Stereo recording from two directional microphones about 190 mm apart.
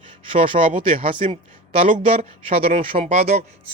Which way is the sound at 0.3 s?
25° right (ahead or behind).